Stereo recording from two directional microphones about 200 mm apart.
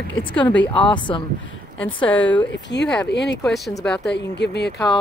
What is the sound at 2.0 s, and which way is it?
Speech, 5° left (ahead or behind).